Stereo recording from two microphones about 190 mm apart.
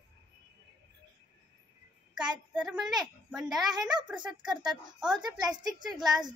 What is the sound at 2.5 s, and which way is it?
A woman's voice, 5° right (ahead or behind).